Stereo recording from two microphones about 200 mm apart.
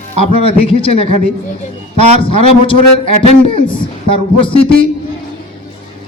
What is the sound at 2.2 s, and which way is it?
A man's voice, 25° left (ahead or behind).